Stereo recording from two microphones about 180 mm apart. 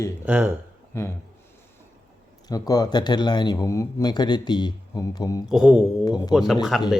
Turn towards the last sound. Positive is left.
turn(degrees=0)  # may be behind; listen again after turning